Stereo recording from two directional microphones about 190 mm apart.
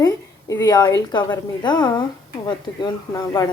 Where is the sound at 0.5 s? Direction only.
20° left (ahead or behind).